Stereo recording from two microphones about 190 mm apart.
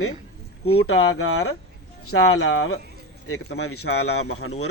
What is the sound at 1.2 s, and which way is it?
Speech, 90° left.